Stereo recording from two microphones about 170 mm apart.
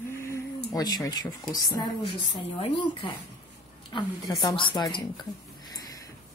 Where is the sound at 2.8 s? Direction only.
30° left (ahead or behind).